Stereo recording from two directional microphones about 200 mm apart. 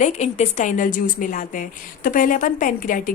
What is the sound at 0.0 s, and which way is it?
A woman's voice, 35° left (ahead or behind).